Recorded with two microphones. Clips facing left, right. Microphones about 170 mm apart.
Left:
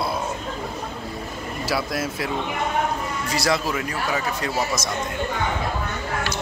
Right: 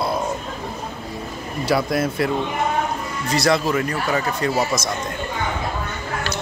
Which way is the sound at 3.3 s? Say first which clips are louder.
Right 5 dB; 5° left (ahead or behind).